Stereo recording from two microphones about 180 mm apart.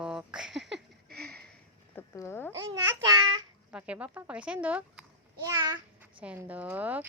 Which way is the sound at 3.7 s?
5° right (ahead or behind).